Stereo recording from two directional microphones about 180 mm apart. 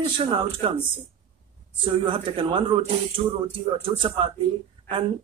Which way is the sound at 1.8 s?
30° right (ahead or behind).